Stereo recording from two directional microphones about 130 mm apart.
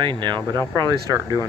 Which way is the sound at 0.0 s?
35° right (ahead or behind).